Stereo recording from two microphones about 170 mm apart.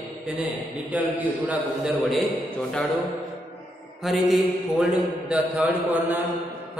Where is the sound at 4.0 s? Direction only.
Centre (ahead or behind).